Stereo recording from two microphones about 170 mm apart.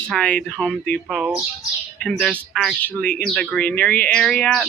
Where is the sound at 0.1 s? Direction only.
5° left (ahead or behind).